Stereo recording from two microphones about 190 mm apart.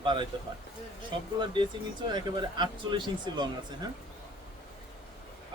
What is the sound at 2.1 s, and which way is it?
Speech, 25° right (ahead or behind).